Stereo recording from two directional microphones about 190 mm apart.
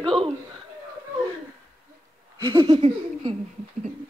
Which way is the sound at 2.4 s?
25° right (ahead or behind).